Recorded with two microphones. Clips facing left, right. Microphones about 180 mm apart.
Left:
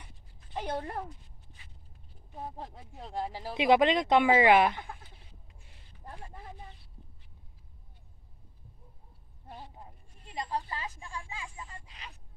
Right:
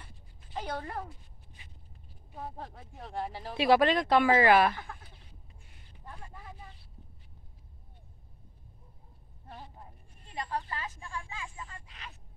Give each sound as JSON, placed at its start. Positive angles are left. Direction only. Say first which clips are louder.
{"t": 0.7, "sound": "a woman's voice", "louder": "left 3 dB", "side_deg": 20}
{"t": 2.5, "sound": "speech", "louder": "even", "side_deg": 10}
{"t": 10.3, "sound": "a sound", "louder": "left 1 dB", "side_deg": 15}